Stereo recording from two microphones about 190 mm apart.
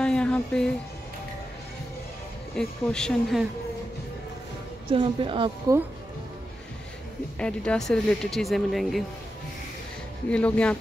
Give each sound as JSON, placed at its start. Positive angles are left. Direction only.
{"t": 0.0, "sound": "a sound", "side_deg": 5}
{"t": 2.5, "sound": "speech", "side_deg": 5}
{"t": 4.9, "sound": "a woman's voice", "side_deg": -25}
{"t": 7.3, "sound": "speech", "side_deg": 5}
{"t": 10.3, "sound": "speech", "side_deg": 5}